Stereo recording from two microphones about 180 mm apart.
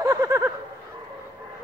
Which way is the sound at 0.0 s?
20° right (ahead or behind).